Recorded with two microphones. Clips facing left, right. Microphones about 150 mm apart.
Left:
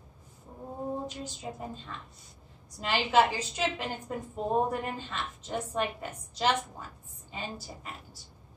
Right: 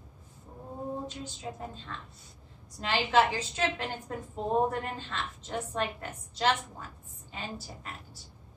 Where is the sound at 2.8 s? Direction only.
10° left (ahead or behind).